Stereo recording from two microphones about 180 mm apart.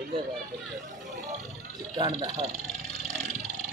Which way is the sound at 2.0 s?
35° right (ahead or behind).